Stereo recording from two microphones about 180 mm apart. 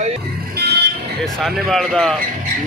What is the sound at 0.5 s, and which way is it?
Vehicle, 65° right (ahead or behind).